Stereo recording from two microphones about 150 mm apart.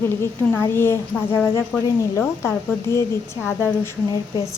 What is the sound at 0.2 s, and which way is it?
A woman's voice, 15° left (ahead or behind).